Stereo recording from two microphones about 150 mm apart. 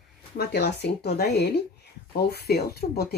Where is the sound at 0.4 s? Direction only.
90° left.